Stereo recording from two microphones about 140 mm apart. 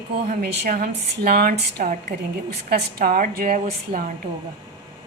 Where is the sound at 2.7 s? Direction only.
90° right; by 4.1 s 75° right (ahead or behind).